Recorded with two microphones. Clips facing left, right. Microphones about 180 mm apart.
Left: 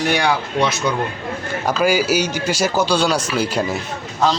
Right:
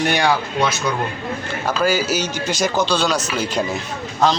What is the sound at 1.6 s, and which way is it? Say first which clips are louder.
Speech: left 2 dB; 10° left (ahead or behind).